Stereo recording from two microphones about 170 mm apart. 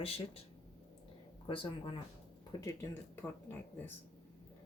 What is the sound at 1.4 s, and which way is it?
Speech, 30° left (ahead or behind).